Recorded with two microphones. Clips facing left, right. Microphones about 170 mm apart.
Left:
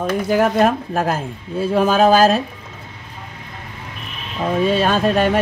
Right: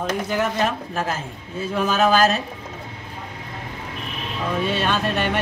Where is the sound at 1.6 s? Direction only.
40° left (ahead or behind).